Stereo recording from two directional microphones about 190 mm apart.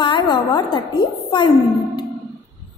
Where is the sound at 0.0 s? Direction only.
25° left (ahead or behind).